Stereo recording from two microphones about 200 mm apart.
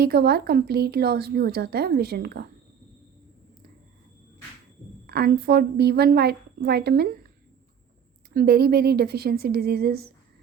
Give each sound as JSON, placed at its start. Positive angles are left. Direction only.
{"t": 0.0, "sound": "a woman's voice", "side_deg": -50}
{"t": 5.0, "sound": "a woman's voice", "side_deg": -50}
{"t": 8.3, "sound": "a woman's voice", "side_deg": -50}